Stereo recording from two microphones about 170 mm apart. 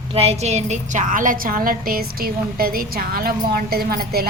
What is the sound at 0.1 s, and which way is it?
A woman's voice, 35° right (ahead or behind).